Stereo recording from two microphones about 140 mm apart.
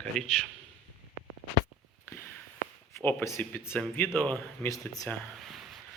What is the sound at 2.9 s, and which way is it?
Speech, 20° left (ahead or behind).